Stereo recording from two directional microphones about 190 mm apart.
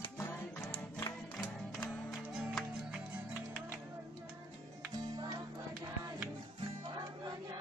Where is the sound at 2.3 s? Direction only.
5° right (ahead or behind).